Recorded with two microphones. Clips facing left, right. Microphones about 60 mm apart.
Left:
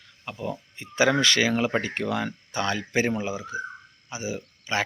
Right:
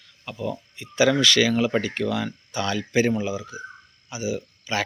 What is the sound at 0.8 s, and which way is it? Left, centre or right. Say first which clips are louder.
Speech: right 2 dB; left.